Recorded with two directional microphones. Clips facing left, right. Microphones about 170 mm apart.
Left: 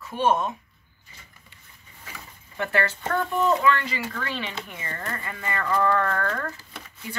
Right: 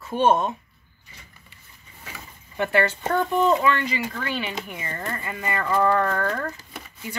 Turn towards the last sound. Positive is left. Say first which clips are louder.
# right 3 dB
turn(degrees=-15)  # may be behind; listen again after turning